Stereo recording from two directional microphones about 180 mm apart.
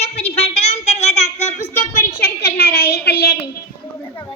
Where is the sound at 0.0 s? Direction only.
35° left (ahead or behind).